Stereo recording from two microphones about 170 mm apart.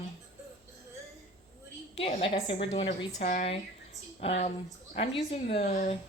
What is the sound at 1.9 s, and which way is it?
A woman's voice, 35° left (ahead or behind).